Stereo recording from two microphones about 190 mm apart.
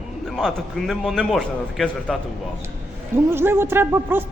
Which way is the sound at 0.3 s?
Centre (ahead or behind).